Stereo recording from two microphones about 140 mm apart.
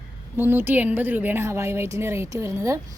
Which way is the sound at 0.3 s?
15° right (ahead or behind).